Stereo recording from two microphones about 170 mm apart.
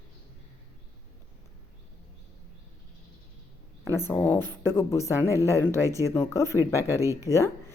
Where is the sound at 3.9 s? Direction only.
15° left (ahead or behind).